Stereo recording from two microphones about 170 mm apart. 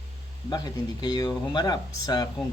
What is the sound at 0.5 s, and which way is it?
Speech, 25° left (ahead or behind).